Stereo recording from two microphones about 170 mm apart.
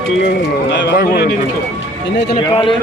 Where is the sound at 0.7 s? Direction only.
85° left.